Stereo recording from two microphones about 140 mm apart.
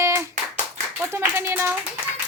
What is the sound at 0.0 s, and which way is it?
Clapping, 20° right (ahead or behind).